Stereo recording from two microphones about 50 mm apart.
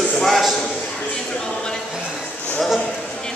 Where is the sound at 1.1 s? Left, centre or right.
Centre.